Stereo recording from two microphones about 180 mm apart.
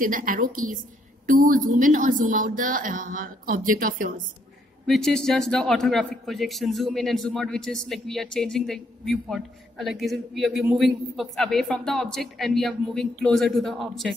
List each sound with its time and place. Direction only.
0.0 s a woman's voice: 50° right (ahead or behind)
4.8 s a man's voice: centre (ahead or behind)